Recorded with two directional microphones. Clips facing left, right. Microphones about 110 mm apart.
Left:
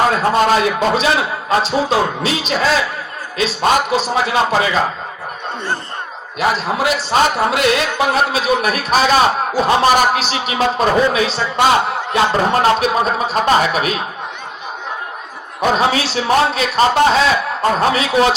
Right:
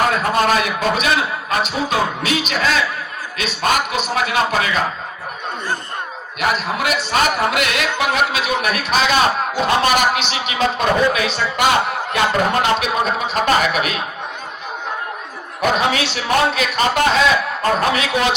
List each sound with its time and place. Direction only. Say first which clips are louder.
0.1 s a man's voice: left 3 dB; 30° left (ahead or behind)
6.4 s a man's voice: left 3 dB; 30° left (ahead or behind)
15.7 s a man's voice: left 4 dB; 30° left (ahead or behind)